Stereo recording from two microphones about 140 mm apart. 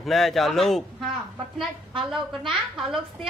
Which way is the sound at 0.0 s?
Centre (ahead or behind).